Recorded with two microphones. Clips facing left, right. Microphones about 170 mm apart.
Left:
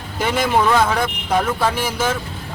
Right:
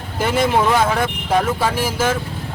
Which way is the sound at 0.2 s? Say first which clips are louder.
Right 1 dB; centre (ahead or behind).